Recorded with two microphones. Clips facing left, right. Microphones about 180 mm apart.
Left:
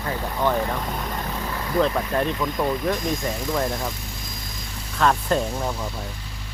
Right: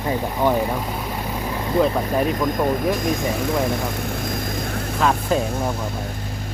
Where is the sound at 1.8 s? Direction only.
10° right (ahead or behind).